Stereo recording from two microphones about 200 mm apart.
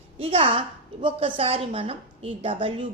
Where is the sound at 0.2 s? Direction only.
30° right (ahead or behind).